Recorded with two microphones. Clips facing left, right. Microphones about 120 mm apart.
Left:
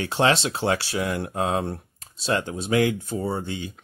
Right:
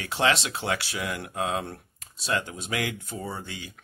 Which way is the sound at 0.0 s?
30° left (ahead or behind).